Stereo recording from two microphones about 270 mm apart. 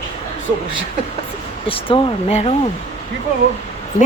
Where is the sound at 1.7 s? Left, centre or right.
Centre.